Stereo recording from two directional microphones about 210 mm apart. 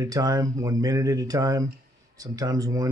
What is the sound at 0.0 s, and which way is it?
Speech, 15° right (ahead or behind).